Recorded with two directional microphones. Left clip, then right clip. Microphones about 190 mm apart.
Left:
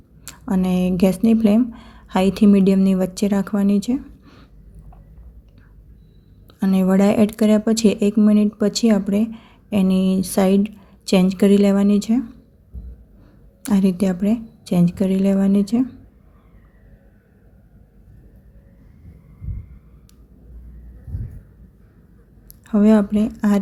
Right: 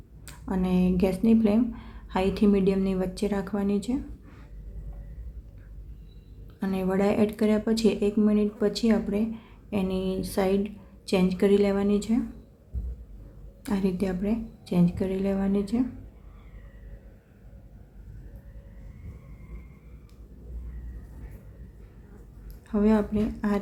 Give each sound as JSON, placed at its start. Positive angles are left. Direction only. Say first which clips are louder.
{"t": 0.3, "sound": "speech", "louder": "left 7 dB", "side_deg": 35}
{"t": 6.6, "sound": "speech", "louder": "left 8 dB", "side_deg": 35}
{"t": 13.7, "sound": "speech", "louder": "left 8 dB", "side_deg": 35}
{"t": 22.6, "sound": "speech", "louder": "left 8 dB", "side_deg": 35}